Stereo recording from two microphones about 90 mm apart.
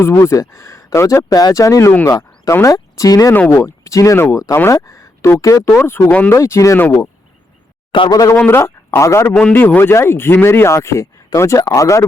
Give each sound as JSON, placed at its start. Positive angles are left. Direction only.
{"t": 0.0, "sound": "speech", "side_deg": 30}
{"t": 2.0, "sound": "a sound", "side_deg": 40}
{"t": 2.5, "sound": "speech", "side_deg": 35}
{"t": 3.3, "sound": "speech", "side_deg": 20}
{"t": 3.6, "sound": "speech", "side_deg": 35}
{"t": 5.7, "sound": "speech", "side_deg": 20}
{"t": 6.3, "sound": "speech", "side_deg": 30}
{"t": 8.1, "sound": "speech", "side_deg": 40}
{"t": 8.4, "sound": "speech", "side_deg": 30}
{"t": 9.5, "sound": "speech", "side_deg": 20}